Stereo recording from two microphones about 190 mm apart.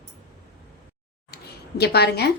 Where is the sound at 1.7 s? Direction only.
60° left (ahead or behind).